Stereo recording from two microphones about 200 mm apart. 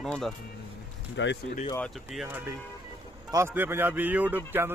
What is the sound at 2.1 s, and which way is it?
A man's voice, 5° right (ahead or behind).